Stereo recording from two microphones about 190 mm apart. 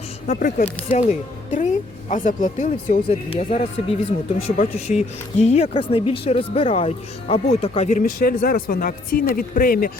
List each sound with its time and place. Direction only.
0.3 s speech: 40° left (ahead or behind)
3.2 s speech: 30° left (ahead or behind)
4.5 s speech: 40° left (ahead or behind)